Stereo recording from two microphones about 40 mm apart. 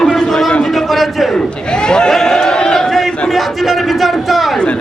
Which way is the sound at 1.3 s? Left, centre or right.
Centre.